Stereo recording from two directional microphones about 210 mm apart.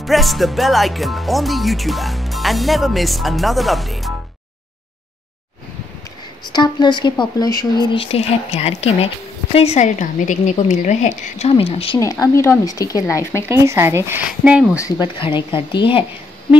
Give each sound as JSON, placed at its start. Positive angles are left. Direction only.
{"t": 0.0, "sound": "speech", "side_deg": 0}
{"t": 6.5, "sound": "speech", "side_deg": 20}
{"t": 12.0, "sound": "speech", "side_deg": 15}
{"t": 13.5, "sound": "speech", "side_deg": -10}
{"t": 14.8, "sound": "speech", "side_deg": 20}